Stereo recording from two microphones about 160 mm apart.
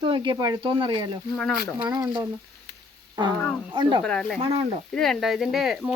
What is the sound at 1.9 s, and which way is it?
Speech, 20° right (ahead or behind).